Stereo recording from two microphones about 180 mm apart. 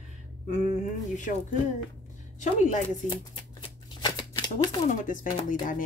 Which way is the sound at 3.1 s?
30° left (ahead or behind).